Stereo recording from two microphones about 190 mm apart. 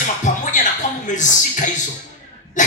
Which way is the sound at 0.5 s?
40° left (ahead or behind).